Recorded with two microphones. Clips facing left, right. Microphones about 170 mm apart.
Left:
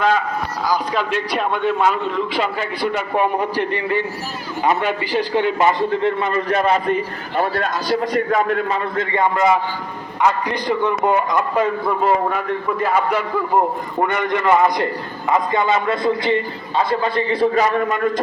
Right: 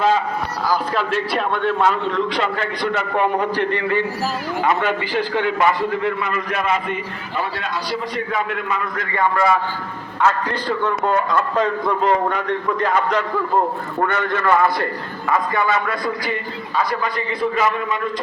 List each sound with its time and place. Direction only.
0.7 s a man's voice: 5° right (ahead or behind); by 18.1 s 45° left (ahead or behind)